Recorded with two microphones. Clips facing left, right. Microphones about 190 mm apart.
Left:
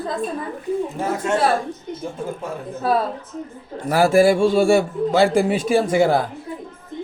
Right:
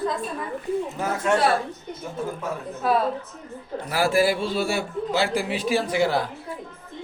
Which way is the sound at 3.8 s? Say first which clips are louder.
Left 7 dB; 45° left (ahead or behind).